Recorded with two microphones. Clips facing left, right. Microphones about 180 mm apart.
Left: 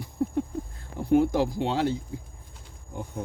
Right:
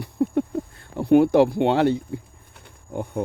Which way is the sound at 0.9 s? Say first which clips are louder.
Right 7 dB; 70° right (ahead or behind).